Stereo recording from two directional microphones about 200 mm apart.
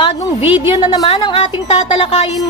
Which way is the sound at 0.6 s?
25° left (ahead or behind).